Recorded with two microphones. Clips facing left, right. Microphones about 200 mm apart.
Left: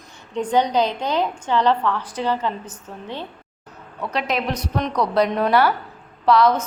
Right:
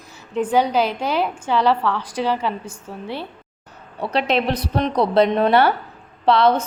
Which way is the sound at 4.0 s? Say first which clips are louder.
Right 4 dB; 30° right (ahead or behind).